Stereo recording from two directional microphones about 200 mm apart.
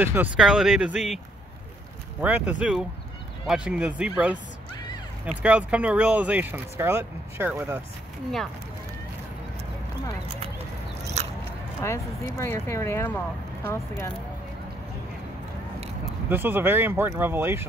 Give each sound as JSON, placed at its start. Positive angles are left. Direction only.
{"t": 0.0, "sound": "speech", "side_deg": -10}
{"t": 2.2, "sound": "speech", "side_deg": -5}
{"t": 5.4, "sound": "speech", "side_deg": -5}
{"t": 11.2, "sound": "biting", "side_deg": -35}
{"t": 11.8, "sound": "speech", "side_deg": 15}
{"t": 16.3, "sound": "speech", "side_deg": -10}